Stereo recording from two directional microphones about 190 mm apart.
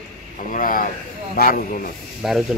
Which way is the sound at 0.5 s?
45° left (ahead or behind).